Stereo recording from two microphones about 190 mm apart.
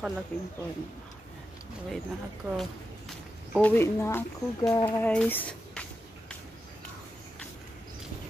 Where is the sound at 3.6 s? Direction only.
10° left (ahead or behind).